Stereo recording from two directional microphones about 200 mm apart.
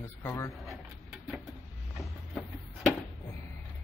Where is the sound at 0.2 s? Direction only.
15° left (ahead or behind).